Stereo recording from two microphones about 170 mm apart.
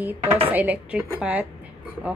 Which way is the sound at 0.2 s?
35° right (ahead or behind).